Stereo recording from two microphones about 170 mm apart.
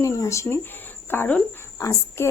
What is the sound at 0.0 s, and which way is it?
Speech, 15° left (ahead or behind).